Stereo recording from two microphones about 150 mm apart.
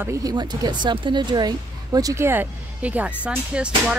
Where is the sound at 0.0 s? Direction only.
20° right (ahead or behind).